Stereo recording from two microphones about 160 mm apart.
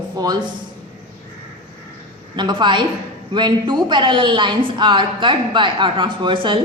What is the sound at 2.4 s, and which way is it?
A woman's voice, 30° right (ahead or behind).